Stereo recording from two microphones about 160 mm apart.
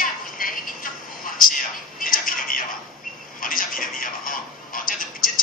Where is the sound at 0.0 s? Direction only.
60° left (ahead or behind).